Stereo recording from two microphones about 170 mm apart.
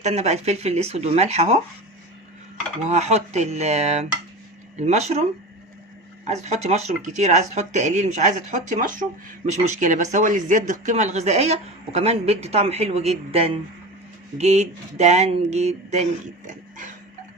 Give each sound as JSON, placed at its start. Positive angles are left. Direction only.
{"t": 0.0, "sound": "speech", "side_deg": -40}
{"t": 2.9, "sound": "speech", "side_deg": -40}
{"t": 6.2, "sound": "speech", "side_deg": -40}